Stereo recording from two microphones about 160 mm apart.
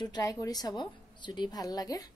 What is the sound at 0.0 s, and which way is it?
A woman's voice, 25° left (ahead or behind).